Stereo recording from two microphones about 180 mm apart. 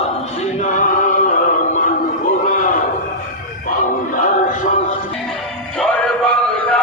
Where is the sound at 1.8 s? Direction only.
45° left (ahead or behind).